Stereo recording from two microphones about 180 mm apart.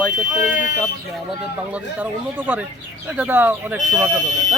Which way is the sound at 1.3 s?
10° right (ahead or behind).